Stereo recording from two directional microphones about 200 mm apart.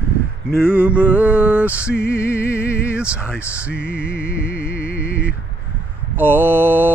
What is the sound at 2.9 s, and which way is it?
Speech, 5° right (ahead or behind).